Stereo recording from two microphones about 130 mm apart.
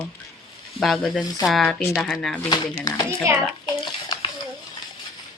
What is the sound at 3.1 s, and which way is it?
Speech, 20° right (ahead or behind).